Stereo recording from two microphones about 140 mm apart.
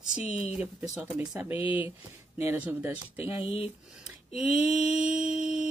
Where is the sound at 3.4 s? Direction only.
45° left (ahead or behind).